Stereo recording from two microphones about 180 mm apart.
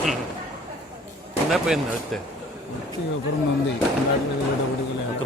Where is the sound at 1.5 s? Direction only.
Centre (ahead or behind).